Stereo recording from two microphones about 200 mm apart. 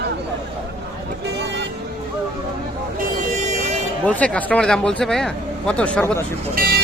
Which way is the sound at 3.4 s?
35° right (ahead or behind).